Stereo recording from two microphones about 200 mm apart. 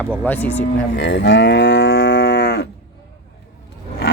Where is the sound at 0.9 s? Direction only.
60° left (ahead or behind).